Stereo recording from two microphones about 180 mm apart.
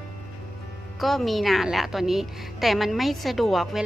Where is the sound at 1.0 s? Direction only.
Centre (ahead or behind).